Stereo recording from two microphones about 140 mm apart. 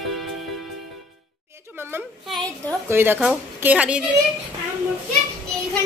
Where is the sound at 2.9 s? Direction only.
15° right (ahead or behind).